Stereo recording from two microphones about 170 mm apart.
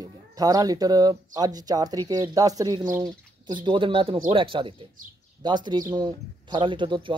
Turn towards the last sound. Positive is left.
turn(degrees=-30)  # may be behind; listen again after turning